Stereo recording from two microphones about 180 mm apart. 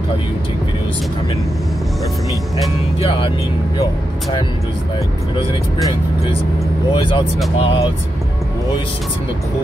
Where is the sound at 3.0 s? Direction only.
30° left (ahead or behind).